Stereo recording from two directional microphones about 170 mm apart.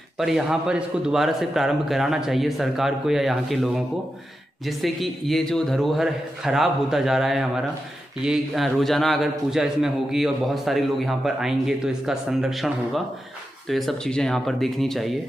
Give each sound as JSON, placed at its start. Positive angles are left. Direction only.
{"t": 0.2, "sound": "a man's voice", "side_deg": 0}